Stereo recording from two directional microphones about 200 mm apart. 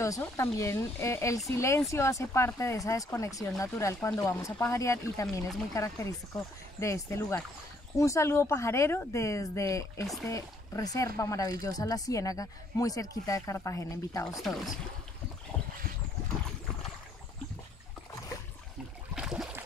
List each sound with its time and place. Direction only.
0.0 s speech: 15° left (ahead or behind)
14.4 s speech: centre (ahead or behind)
15.5 s boat: 10° left (ahead or behind)
19.1 s a sound: 5° right (ahead or behind)